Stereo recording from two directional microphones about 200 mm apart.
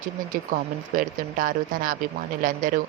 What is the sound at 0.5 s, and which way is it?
Speech, 45° right (ahead or behind).